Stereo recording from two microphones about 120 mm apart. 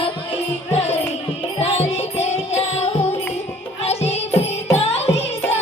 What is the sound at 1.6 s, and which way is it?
Music, 55° left (ahead or behind).